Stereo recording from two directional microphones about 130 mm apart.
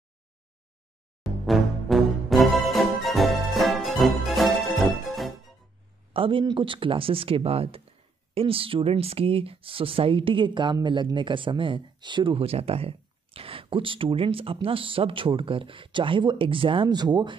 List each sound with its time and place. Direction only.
1.2 s music: centre (ahead or behind)
6.1 s speech: 40° right (ahead or behind)